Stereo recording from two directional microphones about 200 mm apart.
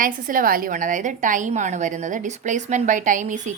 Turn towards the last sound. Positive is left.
turn(degrees=-40)  # may be behind; listen again after turning